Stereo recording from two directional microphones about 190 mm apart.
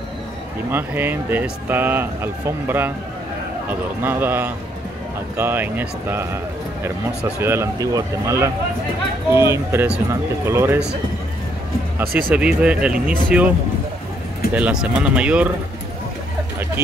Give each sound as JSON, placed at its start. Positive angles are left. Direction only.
{"t": 0.7, "sound": "speech", "side_deg": -10}
{"t": 7.3, "sound": "speech", "side_deg": -15}
{"t": 12.0, "sound": "speech", "side_deg": -50}
{"t": 12.4, "sound": "speech", "side_deg": -5}
{"t": 14.5, "sound": "speech", "side_deg": -5}